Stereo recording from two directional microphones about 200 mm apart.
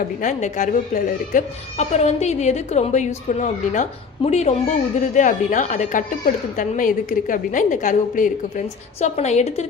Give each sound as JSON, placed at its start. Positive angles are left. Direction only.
{"t": 0.2, "sound": "a woman's voice", "side_deg": 35}